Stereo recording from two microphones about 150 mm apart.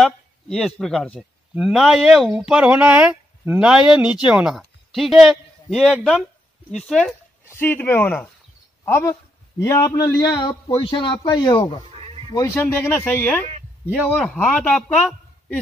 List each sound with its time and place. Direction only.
0.0 s a man's voice: 5° left (ahead or behind); by 11.8 s 30° left (ahead or behind)
12.0 s music: 35° right (ahead or behind)
12.5 s speech: 15° left (ahead or behind)
13.8 s speech: 5° right (ahead or behind)